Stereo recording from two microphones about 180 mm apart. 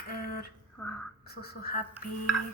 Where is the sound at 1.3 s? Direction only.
60° left (ahead or behind).